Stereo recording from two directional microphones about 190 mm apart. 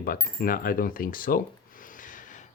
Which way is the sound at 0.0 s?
50° left (ahead or behind).